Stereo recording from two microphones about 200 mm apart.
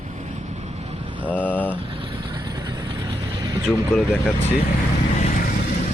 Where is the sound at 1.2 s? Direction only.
10° left (ahead or behind).